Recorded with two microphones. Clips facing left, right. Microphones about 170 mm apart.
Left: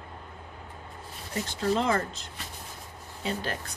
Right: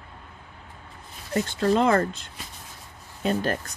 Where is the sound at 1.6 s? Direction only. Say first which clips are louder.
Right 5 dB; 55° right (ahead or behind).